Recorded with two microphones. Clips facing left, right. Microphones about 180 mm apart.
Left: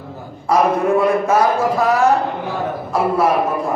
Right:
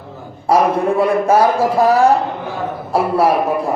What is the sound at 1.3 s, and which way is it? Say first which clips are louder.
A man's voice: right 2 dB; 30° right (ahead or behind).